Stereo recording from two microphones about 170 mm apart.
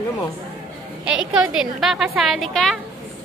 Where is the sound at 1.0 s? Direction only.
5° right (ahead or behind).